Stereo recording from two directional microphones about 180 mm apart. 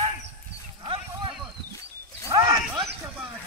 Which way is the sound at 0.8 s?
30° right (ahead or behind).